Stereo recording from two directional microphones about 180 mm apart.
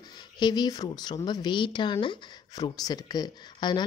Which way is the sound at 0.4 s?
25° left (ahead or behind).